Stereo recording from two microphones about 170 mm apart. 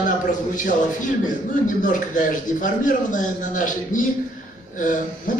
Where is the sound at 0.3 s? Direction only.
50° left (ahead or behind).